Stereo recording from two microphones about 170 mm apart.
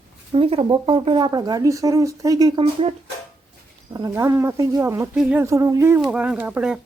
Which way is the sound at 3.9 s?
20° right (ahead or behind).